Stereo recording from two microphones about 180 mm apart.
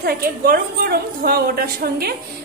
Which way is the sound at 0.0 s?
55° right (ahead or behind).